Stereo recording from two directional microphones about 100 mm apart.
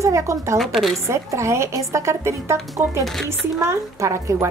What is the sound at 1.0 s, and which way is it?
A woman's voice, 30° right (ahead or behind).